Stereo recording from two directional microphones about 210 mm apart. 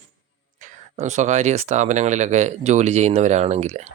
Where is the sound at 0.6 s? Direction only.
35° right (ahead or behind).